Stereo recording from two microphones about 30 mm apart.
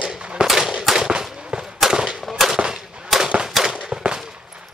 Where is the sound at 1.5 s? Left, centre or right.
Right.